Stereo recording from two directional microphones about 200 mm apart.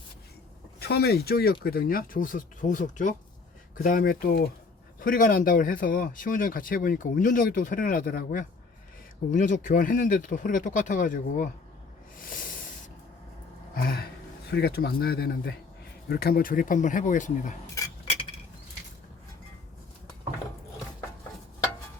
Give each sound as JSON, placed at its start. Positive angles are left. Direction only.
{"t": 0.8, "sound": "speech", "side_deg": 55}
{"t": 13.7, "sound": "speech", "side_deg": 45}